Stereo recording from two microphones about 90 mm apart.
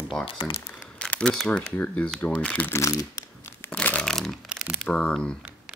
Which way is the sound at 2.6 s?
30° left (ahead or behind).